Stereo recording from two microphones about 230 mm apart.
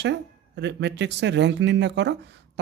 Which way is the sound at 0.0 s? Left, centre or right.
Right.